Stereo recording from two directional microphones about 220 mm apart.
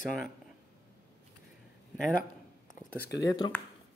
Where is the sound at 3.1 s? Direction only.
15° left (ahead or behind).